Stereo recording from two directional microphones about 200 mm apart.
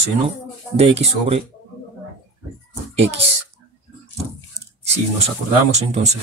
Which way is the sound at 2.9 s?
30° right (ahead or behind).